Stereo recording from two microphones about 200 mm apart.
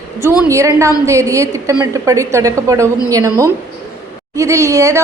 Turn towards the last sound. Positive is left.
turn(degrees=-15)  # may be behind; listen again after turning